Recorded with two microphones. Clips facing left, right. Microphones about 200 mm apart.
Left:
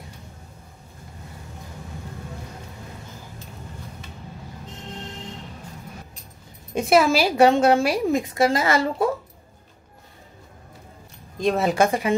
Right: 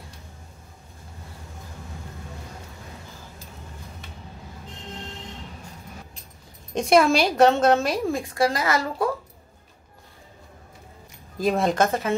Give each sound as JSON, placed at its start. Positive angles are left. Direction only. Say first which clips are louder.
{"t": 6.7, "sound": "speech", "louder": "even", "side_deg": 5}
{"t": 8.2, "sound": "speech", "louder": "left 3 dB", "side_deg": 20}
{"t": 11.3, "sound": "speech", "louder": "left 1 dB", "side_deg": 0}